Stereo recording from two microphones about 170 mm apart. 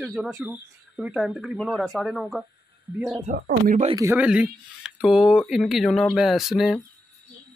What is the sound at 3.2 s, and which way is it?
Speech, 50° right (ahead or behind).